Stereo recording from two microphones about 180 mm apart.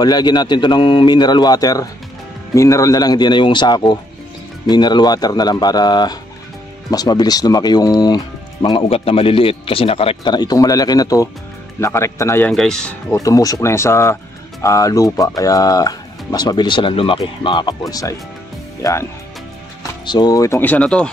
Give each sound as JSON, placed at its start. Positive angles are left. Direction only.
{"t": 0.0, "sound": "speech", "side_deg": 20}
{"t": 13.2, "sound": "speech", "side_deg": 20}
{"t": 20.1, "sound": "speech", "side_deg": 20}